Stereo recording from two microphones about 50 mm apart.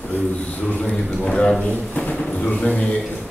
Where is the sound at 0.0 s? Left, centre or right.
Left.